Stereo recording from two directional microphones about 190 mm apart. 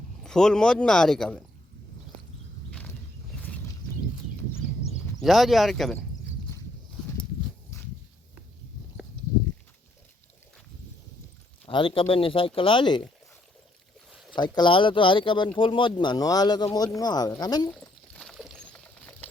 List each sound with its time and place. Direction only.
0.2 s speech: 5° left (ahead or behind)
2.6 s a sound: 5° left (ahead or behind)
5.2 s speech: centre (ahead or behind)
11.6 s speech: 25° left (ahead or behind)
14.3 s speech: 25° left (ahead or behind)
17.7 s a sound: 5° left (ahead or behind)